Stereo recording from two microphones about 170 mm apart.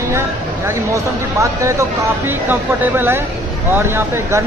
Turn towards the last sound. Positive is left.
turn(degrees=-15)  # may be behind; listen again after turning